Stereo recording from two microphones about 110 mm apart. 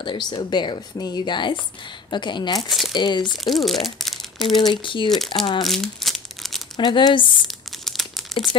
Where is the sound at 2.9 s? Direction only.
40° left (ahead or behind).